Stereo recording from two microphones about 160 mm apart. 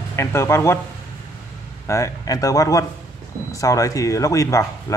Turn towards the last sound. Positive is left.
turn(degrees=20)  # may be behind; listen again after turning